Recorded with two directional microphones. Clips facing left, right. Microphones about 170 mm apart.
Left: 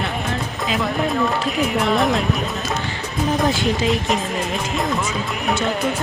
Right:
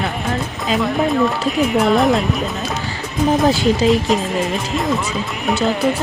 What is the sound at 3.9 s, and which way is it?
Speech, centre (ahead or behind).